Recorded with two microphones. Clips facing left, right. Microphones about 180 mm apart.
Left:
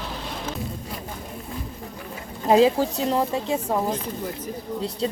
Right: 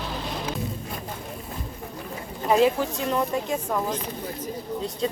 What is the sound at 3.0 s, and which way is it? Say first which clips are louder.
Speech: left 2 dB; 25° left (ahead or behind).